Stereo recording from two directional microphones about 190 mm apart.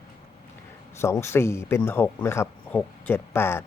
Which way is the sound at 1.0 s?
15° left (ahead or behind).